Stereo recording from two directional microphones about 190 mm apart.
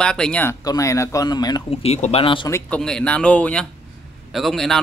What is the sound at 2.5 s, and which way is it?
A man's voice, 5° left (ahead or behind).